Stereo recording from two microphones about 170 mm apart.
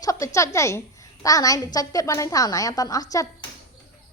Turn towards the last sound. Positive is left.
turn(degrees=20)  # may be behind; listen again after turning